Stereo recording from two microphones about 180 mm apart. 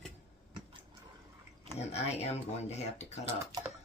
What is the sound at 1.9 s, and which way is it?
Speech, 35° left (ahead or behind).